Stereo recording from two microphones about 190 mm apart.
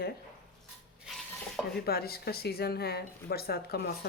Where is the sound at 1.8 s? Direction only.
55° left (ahead or behind).